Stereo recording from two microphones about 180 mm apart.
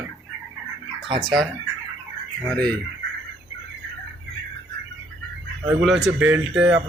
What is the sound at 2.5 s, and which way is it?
Fowl, 5° left (ahead or behind).